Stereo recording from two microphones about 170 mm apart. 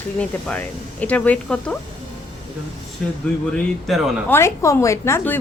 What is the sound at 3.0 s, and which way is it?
Speech, centre (ahead or behind).